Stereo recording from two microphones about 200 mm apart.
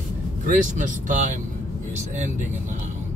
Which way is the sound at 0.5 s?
40° right (ahead or behind).